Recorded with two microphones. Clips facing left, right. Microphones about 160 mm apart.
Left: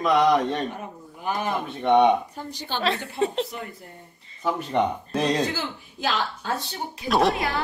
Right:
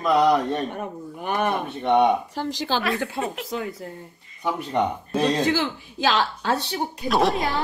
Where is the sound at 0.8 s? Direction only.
60° right (ahead or behind).